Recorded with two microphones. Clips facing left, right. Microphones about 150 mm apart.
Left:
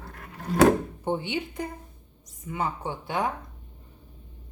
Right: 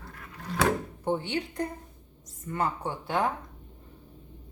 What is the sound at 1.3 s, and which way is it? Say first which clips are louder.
Speech: even; 5° left (ahead or behind).